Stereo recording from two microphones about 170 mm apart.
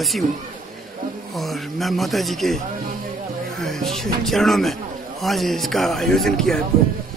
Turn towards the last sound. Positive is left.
turn(degrees=0)  # may be behind; listen again after turning